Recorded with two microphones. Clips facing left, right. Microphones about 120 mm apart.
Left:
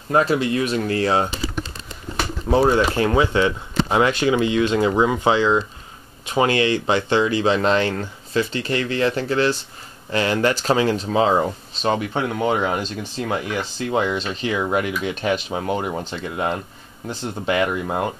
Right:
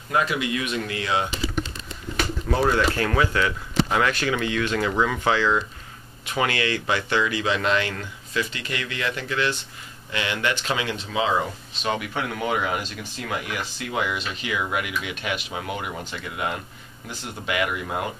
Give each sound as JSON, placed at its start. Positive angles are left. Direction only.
{"t": 0.1, "sound": "speech", "side_deg": 35}
{"t": 2.4, "sound": "speech", "side_deg": 25}